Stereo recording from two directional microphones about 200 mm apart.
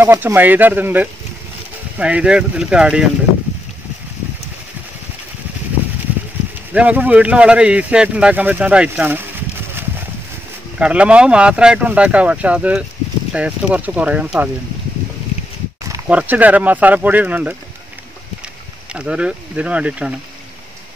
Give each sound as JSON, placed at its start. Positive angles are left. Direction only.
{"t": 0.0, "sound": "speech", "side_deg": -10}
{"t": 6.7, "sound": "speech", "side_deg": -5}
{"t": 10.8, "sound": "speech", "side_deg": -5}
{"t": 16.1, "sound": "speech", "side_deg": -5}
{"t": 18.9, "sound": "speech", "side_deg": -5}